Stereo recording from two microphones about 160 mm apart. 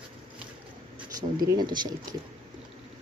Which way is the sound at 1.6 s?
25° right (ahead or behind).